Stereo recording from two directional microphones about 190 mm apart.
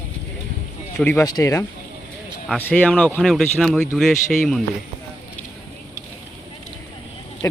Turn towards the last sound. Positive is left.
turn(degrees=15)  # may be behind; listen again after turning